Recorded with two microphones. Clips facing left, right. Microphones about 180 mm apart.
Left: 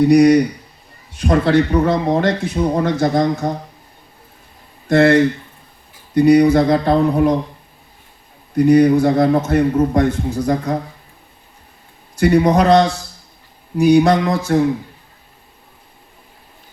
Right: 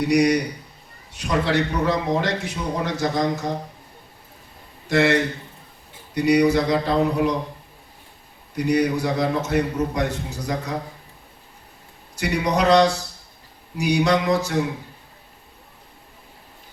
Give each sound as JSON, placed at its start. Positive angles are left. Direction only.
{"t": 0.0, "sound": "a man's voice", "side_deg": 55}
{"t": 4.9, "sound": "a man's voice", "side_deg": 50}
{"t": 6.1, "sound": "a man's voice", "side_deg": 55}
{"t": 8.5, "sound": "a man's voice", "side_deg": 55}
{"t": 12.1, "sound": "a man's voice", "side_deg": 55}